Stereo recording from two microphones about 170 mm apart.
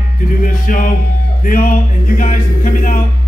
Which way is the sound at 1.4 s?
55° left (ahead or behind).